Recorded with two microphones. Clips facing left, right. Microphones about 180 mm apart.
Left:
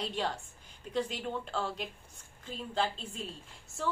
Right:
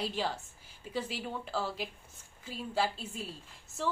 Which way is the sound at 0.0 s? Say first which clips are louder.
Even; 5° right (ahead or behind).